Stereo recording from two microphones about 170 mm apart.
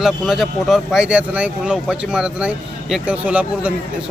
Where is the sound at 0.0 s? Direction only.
Centre (ahead or behind).